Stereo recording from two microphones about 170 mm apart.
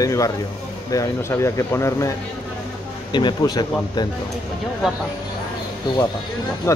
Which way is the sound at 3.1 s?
25° left (ahead or behind).